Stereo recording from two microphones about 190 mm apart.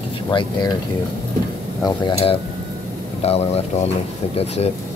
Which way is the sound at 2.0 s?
30° left (ahead or behind).